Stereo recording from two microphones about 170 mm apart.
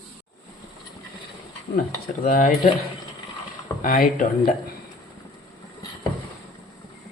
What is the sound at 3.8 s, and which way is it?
Speech, 55° left (ahead or behind).